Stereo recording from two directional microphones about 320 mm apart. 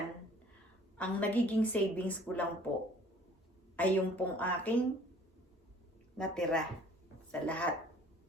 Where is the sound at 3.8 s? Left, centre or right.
Centre.